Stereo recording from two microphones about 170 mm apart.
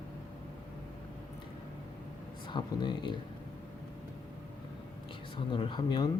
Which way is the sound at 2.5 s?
25° left (ahead or behind).